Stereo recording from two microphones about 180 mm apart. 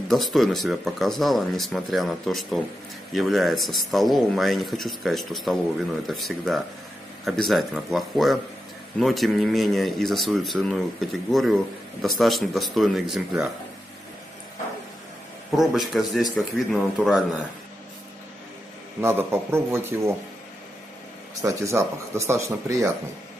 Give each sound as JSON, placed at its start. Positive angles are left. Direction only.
{"t": 0.1, "sound": "speech", "side_deg": 0}
{"t": 15.5, "sound": "speech", "side_deg": 0}
{"t": 18.9, "sound": "speech", "side_deg": -15}
{"t": 21.4, "sound": "speech", "side_deg": -15}